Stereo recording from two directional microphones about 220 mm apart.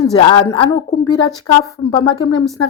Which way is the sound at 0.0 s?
25° left (ahead or behind).